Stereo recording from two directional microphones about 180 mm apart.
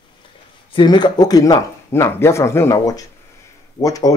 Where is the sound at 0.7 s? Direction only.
25° left (ahead or behind).